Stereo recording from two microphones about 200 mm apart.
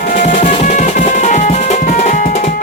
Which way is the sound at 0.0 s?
40° left (ahead or behind).